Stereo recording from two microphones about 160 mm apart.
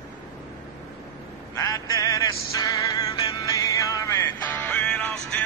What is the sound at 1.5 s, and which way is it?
Music, 20° left (ahead or behind).